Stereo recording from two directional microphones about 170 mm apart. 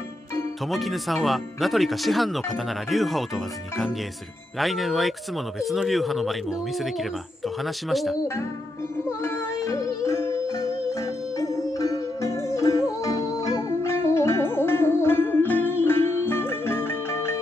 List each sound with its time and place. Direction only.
0.7 s speech: centre (ahead or behind)
4.6 s speech: centre (ahead or behind)
9.2 s music: 15° left (ahead or behind)